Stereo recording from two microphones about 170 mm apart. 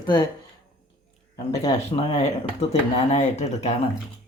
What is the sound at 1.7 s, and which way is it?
Speech, 40° left (ahead or behind).